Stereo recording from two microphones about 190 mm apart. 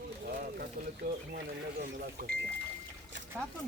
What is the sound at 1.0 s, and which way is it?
Speech, 55° right (ahead or behind).